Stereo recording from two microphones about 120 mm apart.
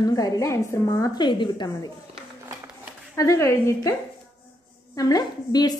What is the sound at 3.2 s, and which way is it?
Speech, 25° left (ahead or behind).